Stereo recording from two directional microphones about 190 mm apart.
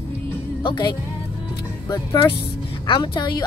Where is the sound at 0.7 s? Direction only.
25° left (ahead or behind).